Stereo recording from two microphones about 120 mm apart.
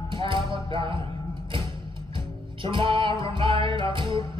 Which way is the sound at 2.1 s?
45° right (ahead or behind).